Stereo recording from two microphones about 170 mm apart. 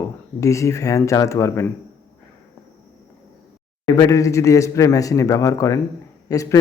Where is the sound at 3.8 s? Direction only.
20° left (ahead or behind).